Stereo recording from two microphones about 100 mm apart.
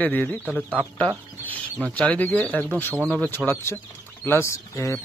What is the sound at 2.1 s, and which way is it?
Speech, 15° left (ahead or behind).